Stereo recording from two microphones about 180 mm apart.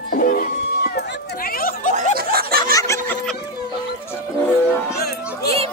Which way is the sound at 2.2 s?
55° right (ahead or behind).